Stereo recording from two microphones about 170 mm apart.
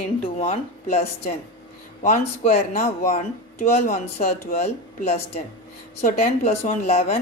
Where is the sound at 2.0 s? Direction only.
45° left (ahead or behind).